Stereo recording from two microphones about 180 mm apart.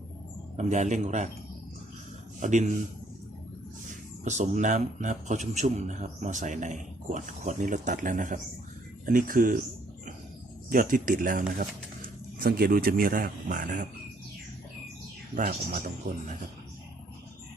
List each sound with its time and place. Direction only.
0.5 s a man's voice: 40° right (ahead or behind)
2.4 s a man's voice: 45° right (ahead or behind)
4.2 s a man's voice: 40° right (ahead or behind)
10.7 s a man's voice: 50° right (ahead or behind)
15.4 s a man's voice: 50° right (ahead or behind)